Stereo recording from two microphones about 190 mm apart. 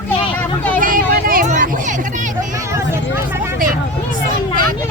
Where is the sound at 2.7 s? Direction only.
15° right (ahead or behind).